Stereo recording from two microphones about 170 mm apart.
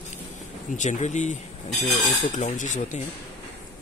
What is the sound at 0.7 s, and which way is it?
Speech, 45° left (ahead or behind).